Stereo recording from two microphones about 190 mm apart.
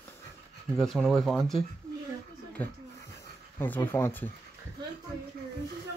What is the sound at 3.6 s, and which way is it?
Speech, 10° left (ahead or behind).